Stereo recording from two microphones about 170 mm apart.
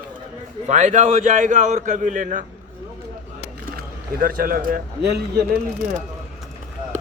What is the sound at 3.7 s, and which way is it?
A man's voice, 60° right (ahead or behind).